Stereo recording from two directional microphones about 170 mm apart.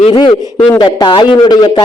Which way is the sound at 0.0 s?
30° left (ahead or behind).